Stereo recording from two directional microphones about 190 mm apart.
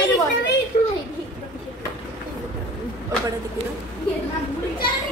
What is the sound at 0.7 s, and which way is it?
Speech, 45° left (ahead or behind).